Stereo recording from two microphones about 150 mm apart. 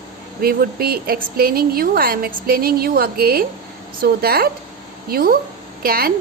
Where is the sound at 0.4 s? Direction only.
90° right.